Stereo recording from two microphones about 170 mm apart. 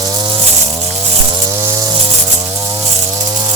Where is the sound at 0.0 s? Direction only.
25° right (ahead or behind).